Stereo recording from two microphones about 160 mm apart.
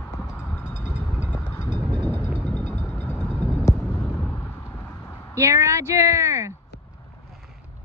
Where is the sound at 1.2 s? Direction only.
10° left (ahead or behind).